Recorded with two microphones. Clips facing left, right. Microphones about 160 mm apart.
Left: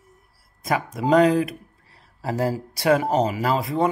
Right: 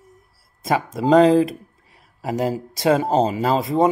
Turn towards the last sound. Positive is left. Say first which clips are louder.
# right 4 dB
turn(degrees=-25)  # may be behind; listen again after turning